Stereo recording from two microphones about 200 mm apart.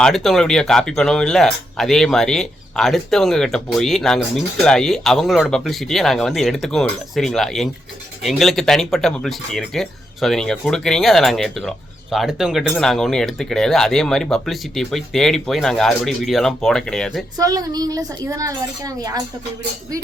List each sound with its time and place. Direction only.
0.0 s speech: centre (ahead or behind)
17.3 s a woman's voice: 20° right (ahead or behind)